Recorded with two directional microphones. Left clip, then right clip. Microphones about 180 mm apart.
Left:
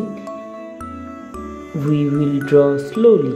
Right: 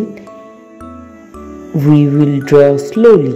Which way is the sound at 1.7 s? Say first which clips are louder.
Right 8 dB; 20° right (ahead or behind).